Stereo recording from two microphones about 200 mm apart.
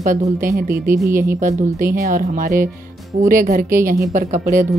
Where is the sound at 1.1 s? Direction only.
10° right (ahead or behind).